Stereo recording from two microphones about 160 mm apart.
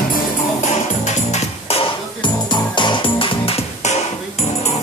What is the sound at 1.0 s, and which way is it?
Music, 45° left (ahead or behind).